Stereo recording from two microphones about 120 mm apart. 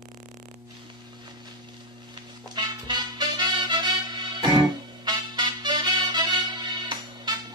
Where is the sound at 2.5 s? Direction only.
40° right (ahead or behind).